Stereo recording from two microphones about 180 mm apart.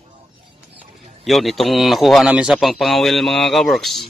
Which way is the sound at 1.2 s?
Centre (ahead or behind).